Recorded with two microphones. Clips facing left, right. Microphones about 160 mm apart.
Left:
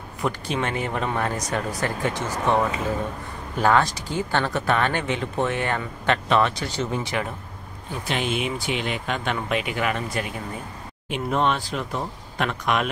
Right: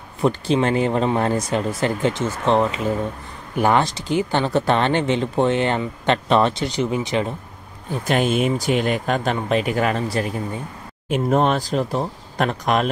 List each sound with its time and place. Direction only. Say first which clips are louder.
0.2 s speech: right 7 dB; 30° right (ahead or behind)
4.5 s speech: right 5 dB; 30° right (ahead or behind)
6.6 s speech: right 5 dB; 15° right (ahead or behind)
8.1 s speech: right 7 dB; 45° right (ahead or behind)